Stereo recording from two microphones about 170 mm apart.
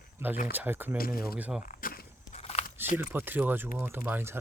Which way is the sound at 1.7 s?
55° left (ahead or behind).